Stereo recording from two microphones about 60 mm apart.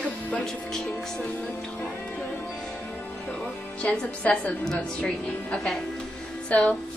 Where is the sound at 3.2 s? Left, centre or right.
Centre.